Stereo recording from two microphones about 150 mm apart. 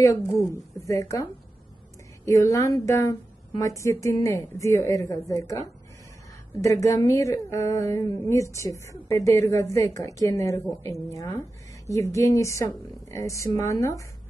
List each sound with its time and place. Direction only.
0.7 s a woman's voice: 20° left (ahead or behind)
2.2 s a woman's voice: 20° left (ahead or behind)